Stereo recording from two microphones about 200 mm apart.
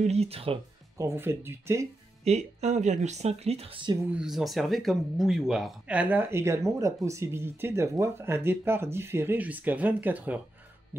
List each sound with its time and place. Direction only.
0.0 s speech: 30° right (ahead or behind)
0.9 s speech: 15° right (ahead or behind)
2.2 s speech: 35° right (ahead or behind)
4.1 s speech: 5° right (ahead or behind)